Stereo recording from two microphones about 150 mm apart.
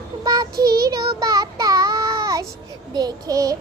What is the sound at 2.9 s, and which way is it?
Speech, 25° right (ahead or behind).